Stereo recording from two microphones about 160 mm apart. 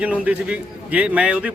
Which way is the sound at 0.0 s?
10° right (ahead or behind).